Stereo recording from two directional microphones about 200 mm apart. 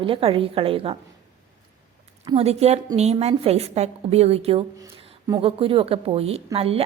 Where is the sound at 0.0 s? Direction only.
25° right (ahead or behind).